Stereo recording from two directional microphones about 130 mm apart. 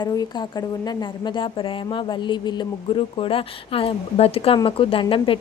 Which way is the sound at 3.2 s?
45° left (ahead or behind).